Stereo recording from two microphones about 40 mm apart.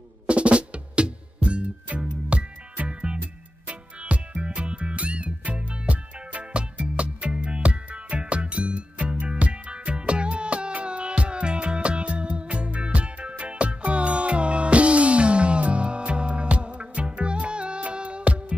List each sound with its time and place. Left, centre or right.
0.3 s music: right